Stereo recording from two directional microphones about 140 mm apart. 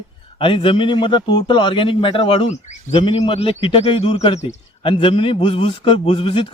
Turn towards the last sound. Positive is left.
turn(degrees=40)  # may be behind; listen again after turning